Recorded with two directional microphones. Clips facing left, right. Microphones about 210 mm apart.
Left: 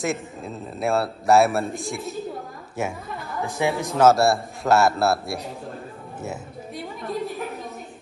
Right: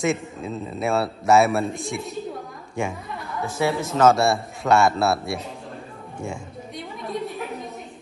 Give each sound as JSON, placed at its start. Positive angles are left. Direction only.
{"t": 0.0, "sound": "a man's voice", "side_deg": 0}
{"t": 3.4, "sound": "speech", "side_deg": 15}
{"t": 4.1, "sound": "a man's voice", "side_deg": 0}
{"t": 6.2, "sound": "a sound", "side_deg": 5}